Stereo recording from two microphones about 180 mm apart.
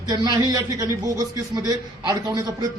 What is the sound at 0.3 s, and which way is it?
A man's voice, 20° right (ahead or behind).